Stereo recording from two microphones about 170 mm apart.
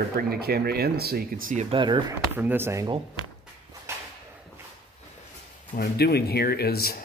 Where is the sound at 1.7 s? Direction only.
30° right (ahead or behind).